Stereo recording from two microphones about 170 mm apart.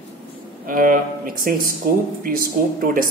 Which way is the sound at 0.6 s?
55° right (ahead or behind).